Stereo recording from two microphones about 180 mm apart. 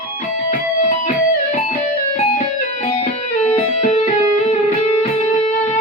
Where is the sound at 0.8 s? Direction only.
40° left (ahead or behind).